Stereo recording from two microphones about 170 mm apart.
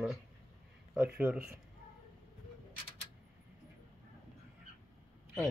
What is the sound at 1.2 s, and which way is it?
Speech, 10° right (ahead or behind).